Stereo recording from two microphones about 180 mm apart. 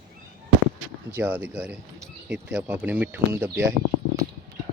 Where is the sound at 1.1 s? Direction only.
10° right (ahead or behind).